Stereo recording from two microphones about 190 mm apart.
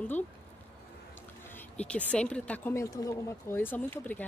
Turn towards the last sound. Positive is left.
turn(degrees=10)  # may be behind; listen again after turning